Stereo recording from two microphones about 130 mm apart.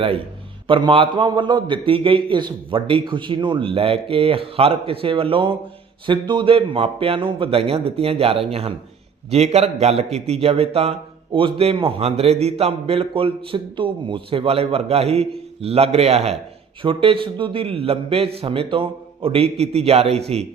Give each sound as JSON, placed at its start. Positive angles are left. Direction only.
{"t": 0.7, "sound": "a man's voice", "side_deg": -40}
{"t": 16.8, "sound": "a man's voice", "side_deg": -45}